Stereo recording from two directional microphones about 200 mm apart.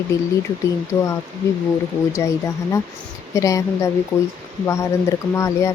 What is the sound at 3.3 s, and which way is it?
Speech, 15° left (ahead or behind).